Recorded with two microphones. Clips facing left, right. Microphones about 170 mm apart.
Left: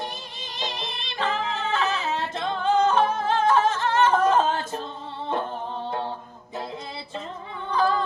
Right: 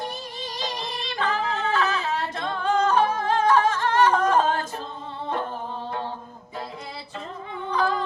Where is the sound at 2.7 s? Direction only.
25° left (ahead or behind).